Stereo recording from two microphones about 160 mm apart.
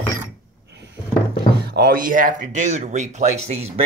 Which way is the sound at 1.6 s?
90° right.